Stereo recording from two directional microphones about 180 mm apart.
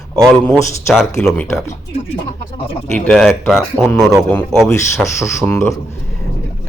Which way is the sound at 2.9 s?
5° left (ahead or behind).